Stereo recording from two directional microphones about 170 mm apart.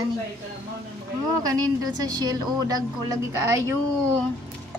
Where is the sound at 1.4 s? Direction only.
20° right (ahead or behind).